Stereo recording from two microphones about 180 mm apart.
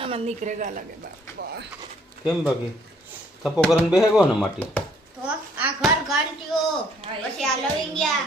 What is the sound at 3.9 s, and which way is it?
Speech, 5° right (ahead or behind).